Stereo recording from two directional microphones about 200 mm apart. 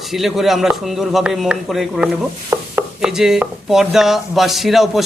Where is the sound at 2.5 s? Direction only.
15° right (ahead or behind).